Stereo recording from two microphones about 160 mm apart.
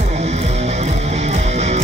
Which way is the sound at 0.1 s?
40° right (ahead or behind).